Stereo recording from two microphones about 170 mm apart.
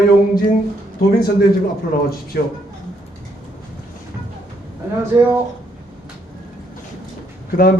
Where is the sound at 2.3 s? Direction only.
75° left (ahead or behind).